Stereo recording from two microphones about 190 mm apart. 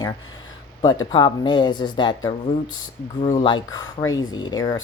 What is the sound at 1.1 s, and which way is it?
Speech, 25° left (ahead or behind).